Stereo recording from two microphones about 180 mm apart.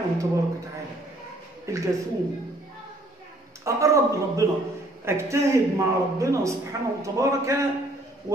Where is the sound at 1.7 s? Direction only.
15° right (ahead or behind).